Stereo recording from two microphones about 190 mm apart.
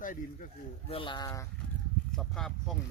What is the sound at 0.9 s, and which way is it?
Speech, 25° left (ahead or behind).